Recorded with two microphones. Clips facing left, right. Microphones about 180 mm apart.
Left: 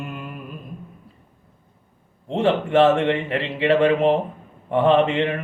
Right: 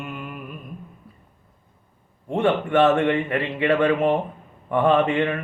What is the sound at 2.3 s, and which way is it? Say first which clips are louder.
Mantra: left 1 dB; 25° left (ahead or behind).